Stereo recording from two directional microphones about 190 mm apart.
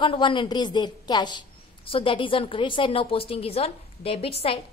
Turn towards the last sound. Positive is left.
turn(degrees=30)  # may be behind; listen again after turning